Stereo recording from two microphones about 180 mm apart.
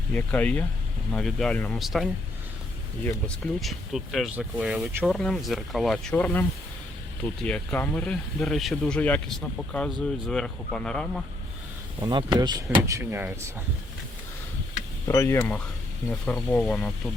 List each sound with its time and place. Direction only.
0.1 s speech: 5° left (ahead or behind)
7.4 s speech: 10° left (ahead or behind)
11.9 s speech: 25° right (ahead or behind)
15.0 s speech: 20° left (ahead or behind)
16.0 s speech: 5° left (ahead or behind)